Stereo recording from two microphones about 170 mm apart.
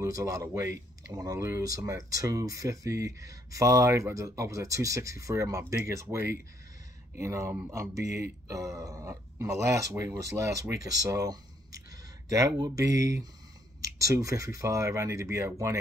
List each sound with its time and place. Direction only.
0.0 s speech: 20° right (ahead or behind)